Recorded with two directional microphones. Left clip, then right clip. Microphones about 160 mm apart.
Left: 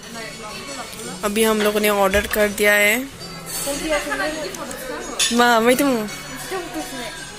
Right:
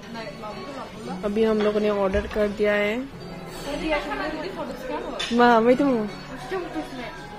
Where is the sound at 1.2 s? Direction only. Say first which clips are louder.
Left 4 dB; 15° left (ahead or behind).